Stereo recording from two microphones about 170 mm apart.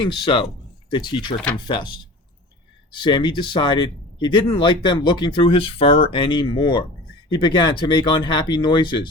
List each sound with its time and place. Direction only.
0.0 s speech: 25° left (ahead or behind)
2.9 s speech: 25° left (ahead or behind)